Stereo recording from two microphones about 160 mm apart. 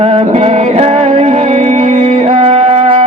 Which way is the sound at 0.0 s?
40° right (ahead or behind).